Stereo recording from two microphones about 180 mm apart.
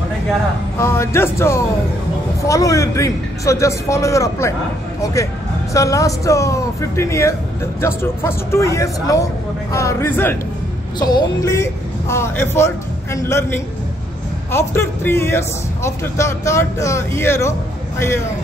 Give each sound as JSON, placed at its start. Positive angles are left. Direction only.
{"t": 0.7, "sound": "speech", "side_deg": 15}
{"t": 11.0, "sound": "speech", "side_deg": 20}